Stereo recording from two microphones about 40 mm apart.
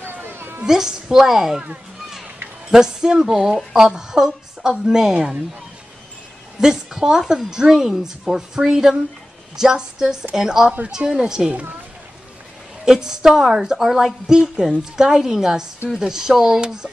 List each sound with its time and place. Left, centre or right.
0.0 s a sound: right
0.7 s a woman's voice: centre
2.7 s a woman's voice: centre
6.6 s a woman's voice: centre
12.8 s a woman's voice: centre